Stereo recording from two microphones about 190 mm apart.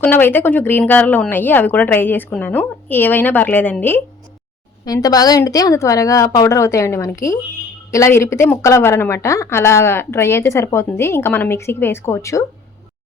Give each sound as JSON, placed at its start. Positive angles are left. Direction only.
{"t": 0.0, "sound": "a woman's voice", "side_deg": 10}